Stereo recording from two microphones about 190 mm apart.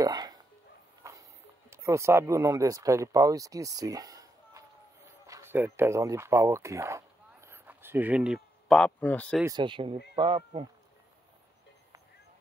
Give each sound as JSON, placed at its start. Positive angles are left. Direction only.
{"t": 0.0, "sound": "dog", "side_deg": -20}
{"t": 1.7, "sound": "speech", "side_deg": -15}
{"t": 9.4, "sound": "speech", "side_deg": -20}